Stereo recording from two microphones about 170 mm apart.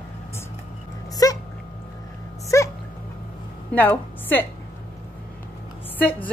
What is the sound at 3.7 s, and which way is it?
Speech, 10° left (ahead or behind).